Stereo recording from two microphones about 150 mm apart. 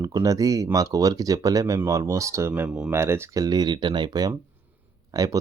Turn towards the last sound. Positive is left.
turn(degrees=-25)  # may be behind; listen again after turning